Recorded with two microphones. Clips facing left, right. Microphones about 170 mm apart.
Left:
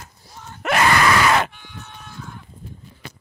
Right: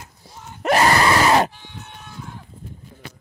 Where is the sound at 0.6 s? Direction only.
35° right (ahead or behind).